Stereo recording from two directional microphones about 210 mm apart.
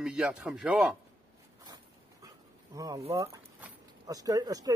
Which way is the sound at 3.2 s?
10° right (ahead or behind).